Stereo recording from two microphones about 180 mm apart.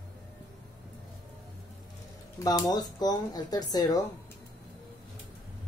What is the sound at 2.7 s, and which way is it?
Speech, 20° left (ahead or behind).